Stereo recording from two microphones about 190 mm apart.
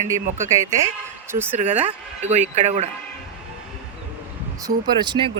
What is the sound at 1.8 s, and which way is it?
Speech, 35° right (ahead or behind).